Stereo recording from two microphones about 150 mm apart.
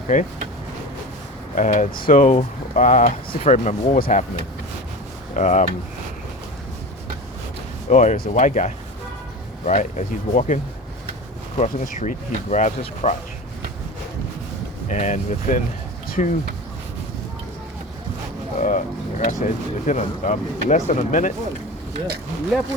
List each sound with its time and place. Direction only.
0.1 s speech: 55° left (ahead or behind)
1.5 s speech: 60° left (ahead or behind)
5.3 s speech: 55° left (ahead or behind)
7.9 s speech: 50° left (ahead or behind)
14.8 s speech: 55° left (ahead or behind)
18.5 s vehicle: 60° left (ahead or behind)
19.2 s speech: 60° left (ahead or behind)